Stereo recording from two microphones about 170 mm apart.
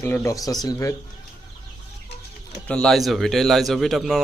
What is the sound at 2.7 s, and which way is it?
A man's voice, 5° left (ahead or behind).